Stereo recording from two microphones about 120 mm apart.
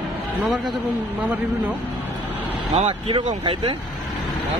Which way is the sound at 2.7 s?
55° right (ahead or behind).